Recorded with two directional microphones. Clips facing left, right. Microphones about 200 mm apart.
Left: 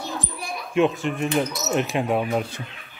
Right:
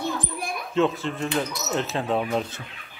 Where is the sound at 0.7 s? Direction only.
15° left (ahead or behind).